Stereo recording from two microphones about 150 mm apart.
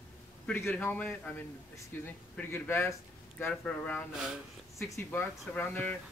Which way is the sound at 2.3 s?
15° left (ahead or behind).